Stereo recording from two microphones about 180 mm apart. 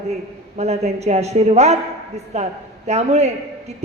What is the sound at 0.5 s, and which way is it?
A man's voice, 35° right (ahead or behind).